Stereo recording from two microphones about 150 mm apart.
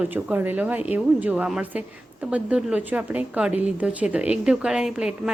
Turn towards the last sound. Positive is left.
turn(degrees=-5)  # may be behind; listen again after turning